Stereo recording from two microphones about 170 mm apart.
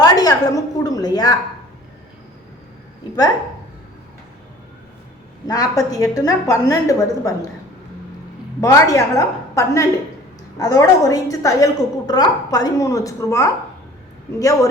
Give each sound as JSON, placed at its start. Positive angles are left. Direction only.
{"t": 0.0, "sound": "a woman's voice", "side_deg": 20}
{"t": 5.5, "sound": "a woman's voice", "side_deg": 20}
{"t": 8.6, "sound": "a woman's voice", "side_deg": 20}